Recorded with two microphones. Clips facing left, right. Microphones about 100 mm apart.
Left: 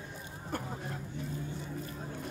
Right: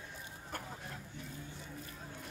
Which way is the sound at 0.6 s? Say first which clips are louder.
Left 6 dB; 30° left (ahead or behind).